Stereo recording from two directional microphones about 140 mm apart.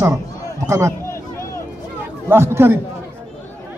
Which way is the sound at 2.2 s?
20° right (ahead or behind).